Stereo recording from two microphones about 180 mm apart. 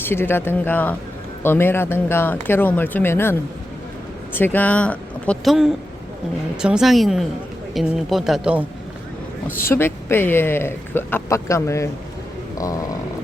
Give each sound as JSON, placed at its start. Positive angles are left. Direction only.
{"t": 0.0, "sound": "speech", "side_deg": 10}
{"t": 4.4, "sound": "speech", "side_deg": 10}
{"t": 9.6, "sound": "speech", "side_deg": 15}